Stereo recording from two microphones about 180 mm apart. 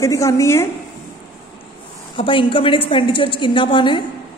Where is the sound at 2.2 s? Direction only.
30° left (ahead or behind).